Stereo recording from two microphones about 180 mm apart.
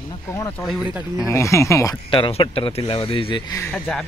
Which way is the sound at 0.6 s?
5° right (ahead or behind).